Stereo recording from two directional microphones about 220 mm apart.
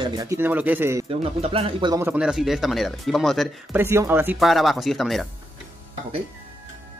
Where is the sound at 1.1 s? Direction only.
25° right (ahead or behind).